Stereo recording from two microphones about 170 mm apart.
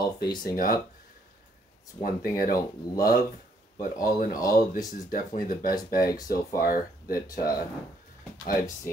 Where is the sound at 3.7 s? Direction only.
20° left (ahead or behind).